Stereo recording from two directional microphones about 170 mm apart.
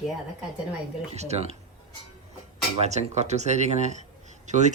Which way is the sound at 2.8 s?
40° right (ahead or behind).